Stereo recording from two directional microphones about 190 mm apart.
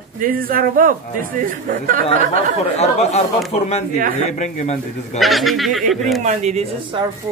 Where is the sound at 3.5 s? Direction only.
35° left (ahead or behind).